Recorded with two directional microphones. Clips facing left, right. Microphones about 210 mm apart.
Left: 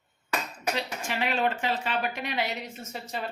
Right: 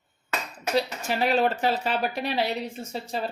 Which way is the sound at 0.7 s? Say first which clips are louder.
Right 11 dB; 40° right (ahead or behind).